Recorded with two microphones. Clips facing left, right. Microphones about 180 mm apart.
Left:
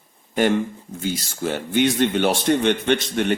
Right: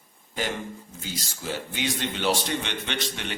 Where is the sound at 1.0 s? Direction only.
60° left (ahead or behind).